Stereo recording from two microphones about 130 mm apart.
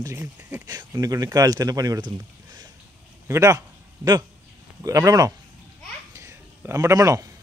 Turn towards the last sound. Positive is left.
turn(degrees=-25)  # may be behind; listen again after turning